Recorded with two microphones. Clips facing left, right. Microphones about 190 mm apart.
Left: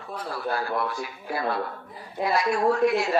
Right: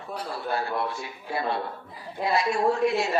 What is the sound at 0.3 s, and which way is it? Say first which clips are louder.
Speech: left 1 dB; 25° right (ahead or behind).